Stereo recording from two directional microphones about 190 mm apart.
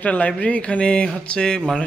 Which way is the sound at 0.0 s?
10° left (ahead or behind).